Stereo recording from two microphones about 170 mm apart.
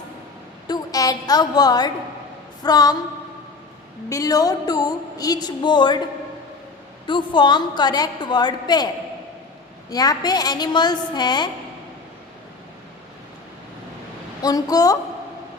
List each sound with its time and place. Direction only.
0.7 s a woman's voice: 20° left (ahead or behind)
4.1 s a woman's voice: 20° left (ahead or behind)
7.1 s a woman's voice: 25° left (ahead or behind)
9.9 s a woman's voice: 20° left (ahead or behind)
14.4 s a woman's voice: 20° left (ahead or behind)